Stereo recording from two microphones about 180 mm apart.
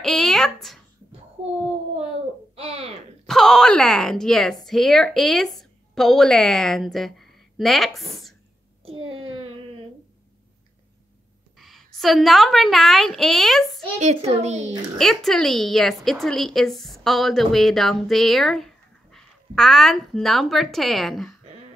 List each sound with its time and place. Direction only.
0.0 s a woman's voice: centre (ahead or behind)
2.5 s a sound: 35° right (ahead or behind)
3.3 s a woman's voice: centre (ahead or behind)
8.8 s a child's voice: 30° right (ahead or behind)
11.5 s a woman's voice: centre (ahead or behind)
13.9 s a child's voice: 40° right (ahead or behind)
15.0 s a woman's voice: centre (ahead or behind)